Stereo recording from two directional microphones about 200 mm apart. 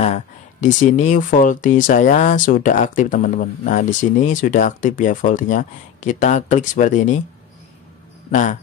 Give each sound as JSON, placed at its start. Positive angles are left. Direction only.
{"t": 0.0, "sound": "speech", "side_deg": 35}
{"t": 8.3, "sound": "speech", "side_deg": 35}